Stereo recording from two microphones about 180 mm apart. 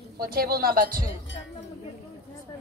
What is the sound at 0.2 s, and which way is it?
Speech, 55° right (ahead or behind).